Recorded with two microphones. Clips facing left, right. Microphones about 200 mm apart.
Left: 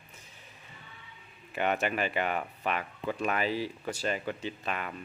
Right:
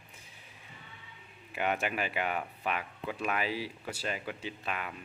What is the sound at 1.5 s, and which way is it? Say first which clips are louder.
Speech: left 3 dB; 5° right (ahead or behind).